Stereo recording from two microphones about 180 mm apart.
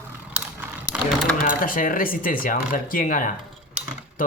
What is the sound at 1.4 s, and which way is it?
Speech, 50° left (ahead or behind).